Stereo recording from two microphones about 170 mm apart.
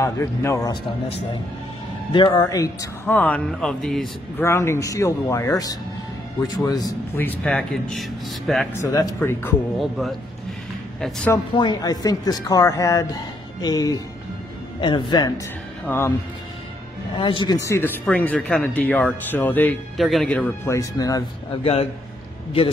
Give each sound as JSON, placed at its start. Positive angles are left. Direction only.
{"t": 0.0, "sound": "speech", "side_deg": 15}
{"t": 2.1, "sound": "speech", "side_deg": 25}
{"t": 4.4, "sound": "speech", "side_deg": 15}
{"t": 7.2, "sound": "speech", "side_deg": 10}
{"t": 8.7, "sound": "speech", "side_deg": 20}
{"t": 9.8, "sound": "speech", "side_deg": 0}
{"t": 11.5, "sound": "speech", "side_deg": 25}
{"t": 17.2, "sound": "speech", "side_deg": 30}
{"t": 20.7, "sound": "speech", "side_deg": 20}